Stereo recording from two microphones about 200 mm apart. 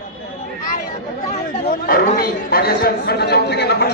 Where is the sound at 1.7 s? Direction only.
45° left (ahead or behind).